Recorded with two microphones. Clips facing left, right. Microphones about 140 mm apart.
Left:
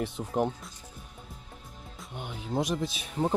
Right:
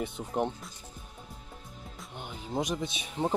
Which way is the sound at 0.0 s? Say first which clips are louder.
Left 2 dB; centre (ahead or behind).